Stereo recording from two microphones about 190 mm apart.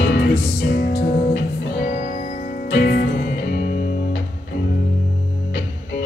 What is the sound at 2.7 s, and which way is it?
Music, 60° left (ahead or behind).